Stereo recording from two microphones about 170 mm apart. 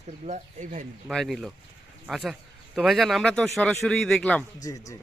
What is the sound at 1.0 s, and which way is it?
Speech, centre (ahead or behind).